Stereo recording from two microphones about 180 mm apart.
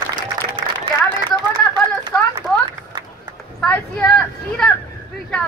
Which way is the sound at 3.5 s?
5° left (ahead or behind).